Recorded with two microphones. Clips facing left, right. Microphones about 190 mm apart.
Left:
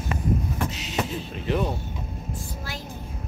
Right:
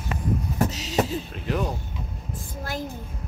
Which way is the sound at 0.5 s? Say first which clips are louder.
Right 4 dB; 40° right (ahead or behind).